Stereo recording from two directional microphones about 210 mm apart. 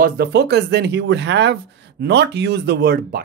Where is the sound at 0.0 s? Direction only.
50° right (ahead or behind).